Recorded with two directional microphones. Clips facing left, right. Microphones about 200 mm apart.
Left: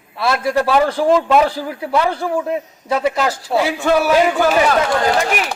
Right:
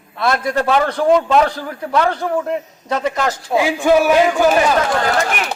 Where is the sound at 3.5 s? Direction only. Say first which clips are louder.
Right 3 dB; 15° right (ahead or behind).